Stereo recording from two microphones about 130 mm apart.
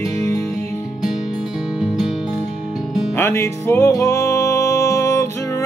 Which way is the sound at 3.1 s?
20° left (ahead or behind).